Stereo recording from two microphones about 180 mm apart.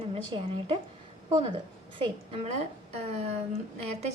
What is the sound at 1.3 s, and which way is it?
A woman's voice, 30° right (ahead or behind).